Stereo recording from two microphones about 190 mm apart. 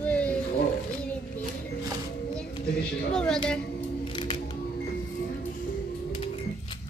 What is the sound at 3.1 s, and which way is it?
Speech, 5° left (ahead or behind).